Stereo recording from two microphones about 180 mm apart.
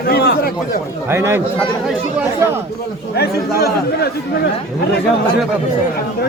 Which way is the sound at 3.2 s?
60° left (ahead or behind).